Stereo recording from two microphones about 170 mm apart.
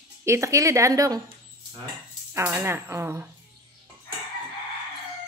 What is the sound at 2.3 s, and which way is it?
Speech, 15° right (ahead or behind).